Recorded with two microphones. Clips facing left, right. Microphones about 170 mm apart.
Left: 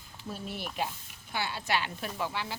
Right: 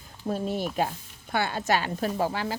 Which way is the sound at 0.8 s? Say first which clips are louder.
Right 6 dB; 55° right (ahead or behind).